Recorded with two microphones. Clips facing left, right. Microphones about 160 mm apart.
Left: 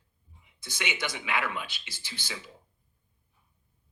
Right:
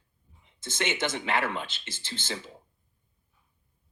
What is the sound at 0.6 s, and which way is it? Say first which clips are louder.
Speech: right 5 dB; 50° right (ahead or behind).